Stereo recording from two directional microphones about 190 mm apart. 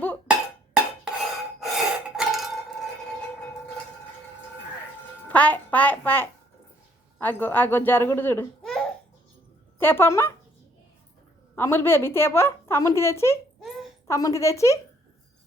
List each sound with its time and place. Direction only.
0.3 s a sound: 5° right (ahead or behind)
1.6 s gasp: centre (ahead or behind)
5.3 s a child's voice: 10° left (ahead or behind)
11.5 s a woman's voice: 15° left (ahead or behind)
13.6 s a sound: centre (ahead or behind)
14.1 s a woman's voice: 15° left (ahead or behind)